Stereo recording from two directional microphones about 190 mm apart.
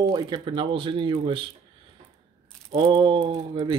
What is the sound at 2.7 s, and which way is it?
Speech, 25° right (ahead or behind).